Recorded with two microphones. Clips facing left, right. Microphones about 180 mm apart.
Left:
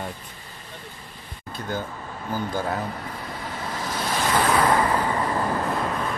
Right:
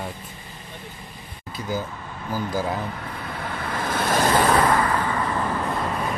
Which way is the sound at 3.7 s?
55° right (ahead or behind).